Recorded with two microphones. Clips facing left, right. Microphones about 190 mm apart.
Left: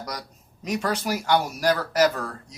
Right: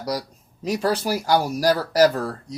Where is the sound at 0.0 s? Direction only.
35° right (ahead or behind).